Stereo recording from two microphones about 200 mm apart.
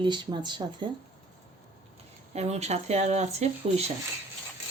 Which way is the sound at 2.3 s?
35° right (ahead or behind).